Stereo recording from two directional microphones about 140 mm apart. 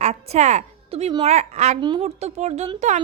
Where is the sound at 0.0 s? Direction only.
50° right (ahead or behind).